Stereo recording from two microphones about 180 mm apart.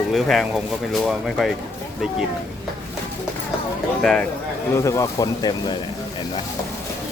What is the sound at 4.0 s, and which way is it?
Speech, 5° left (ahead or behind).